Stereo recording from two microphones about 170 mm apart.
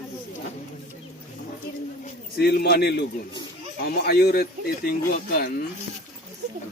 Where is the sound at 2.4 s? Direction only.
65° left (ahead or behind).